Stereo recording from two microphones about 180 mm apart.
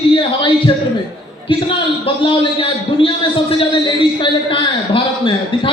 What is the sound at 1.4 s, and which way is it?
A man's voice, 30° left (ahead or behind).